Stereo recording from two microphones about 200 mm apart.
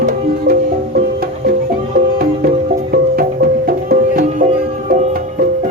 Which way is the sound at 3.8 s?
45° right (ahead or behind).